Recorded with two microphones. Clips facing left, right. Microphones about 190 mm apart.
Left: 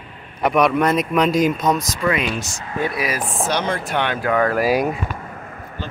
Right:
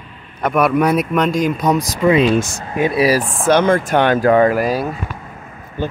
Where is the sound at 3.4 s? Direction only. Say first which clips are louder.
Right 9 dB; 50° right (ahead or behind).